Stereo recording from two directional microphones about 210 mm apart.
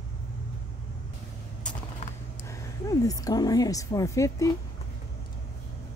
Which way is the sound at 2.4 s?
15° left (ahead or behind).